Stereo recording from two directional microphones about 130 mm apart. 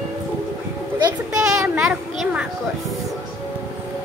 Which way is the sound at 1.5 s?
5° right (ahead or behind).